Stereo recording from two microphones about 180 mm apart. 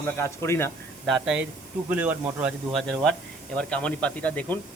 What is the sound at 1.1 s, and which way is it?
Speech, 5° right (ahead or behind).